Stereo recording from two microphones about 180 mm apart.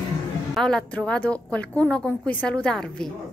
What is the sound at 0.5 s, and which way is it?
A woman's voice, 5° left (ahead or behind).